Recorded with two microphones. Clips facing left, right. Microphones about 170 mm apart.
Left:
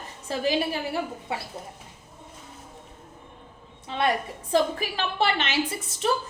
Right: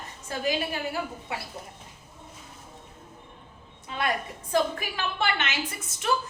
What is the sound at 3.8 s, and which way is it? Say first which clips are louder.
A woman's voice: left 4 dB; 30° left (ahead or behind).